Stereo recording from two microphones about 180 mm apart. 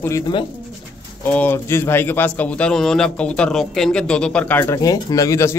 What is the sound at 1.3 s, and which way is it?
A man's voice, 10° left (ahead or behind).